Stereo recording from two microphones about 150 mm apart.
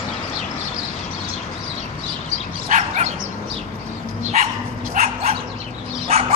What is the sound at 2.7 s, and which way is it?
Dog, 55° right (ahead or behind).